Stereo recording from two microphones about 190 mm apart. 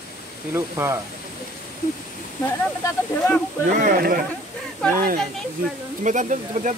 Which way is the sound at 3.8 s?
50° right (ahead or behind).